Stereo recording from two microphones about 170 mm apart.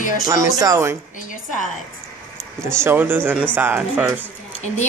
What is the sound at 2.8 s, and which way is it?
Speech, 10° right (ahead or behind).